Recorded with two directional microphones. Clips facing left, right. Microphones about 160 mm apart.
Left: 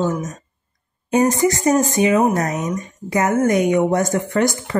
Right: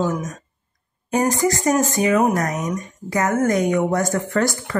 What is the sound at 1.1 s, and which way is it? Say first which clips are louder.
Speech: left 3 dB; 20° left (ahead or behind).